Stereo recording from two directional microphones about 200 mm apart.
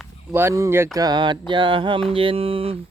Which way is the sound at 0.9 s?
20° right (ahead or behind).